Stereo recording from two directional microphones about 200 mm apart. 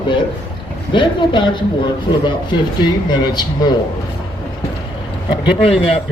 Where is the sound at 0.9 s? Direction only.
25° left (ahead or behind).